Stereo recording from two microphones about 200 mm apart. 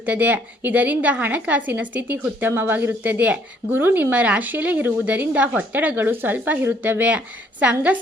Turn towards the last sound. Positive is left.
turn(degrees=-10)  # may be behind; listen again after turning